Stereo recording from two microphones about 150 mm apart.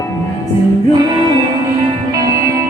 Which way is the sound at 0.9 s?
30° right (ahead or behind).